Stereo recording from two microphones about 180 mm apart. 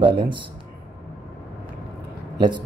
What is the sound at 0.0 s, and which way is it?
Speech, 25° right (ahead or behind).